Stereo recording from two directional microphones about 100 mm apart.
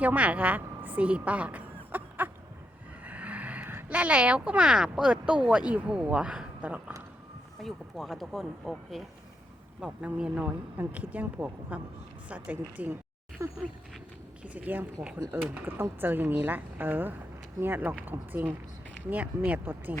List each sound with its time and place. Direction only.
0.0 s a woman's voice: 15° right (ahead or behind)
7.6 s speech: centre (ahead or behind)
9.8 s speech: 10° right (ahead or behind)
13.4 s speech: 30° right (ahead or behind)
14.4 s speech: 15° right (ahead or behind)